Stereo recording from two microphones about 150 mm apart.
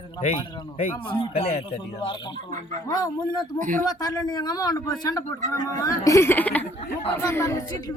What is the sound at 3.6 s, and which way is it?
Speech, 60° right (ahead or behind).